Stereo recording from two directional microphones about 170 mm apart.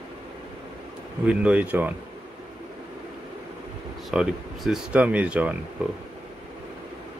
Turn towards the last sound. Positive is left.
turn(degrees=-10)  # may be behind; listen again after turning